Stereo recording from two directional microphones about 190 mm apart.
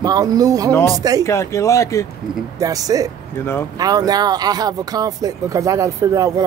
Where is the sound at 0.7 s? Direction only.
15° left (ahead or behind).